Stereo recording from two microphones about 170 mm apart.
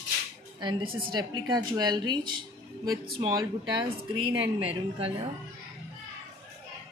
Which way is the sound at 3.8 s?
30° right (ahead or behind).